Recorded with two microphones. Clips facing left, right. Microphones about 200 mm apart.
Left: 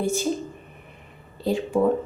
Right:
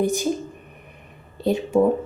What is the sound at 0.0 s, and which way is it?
Speech, 15° right (ahead or behind).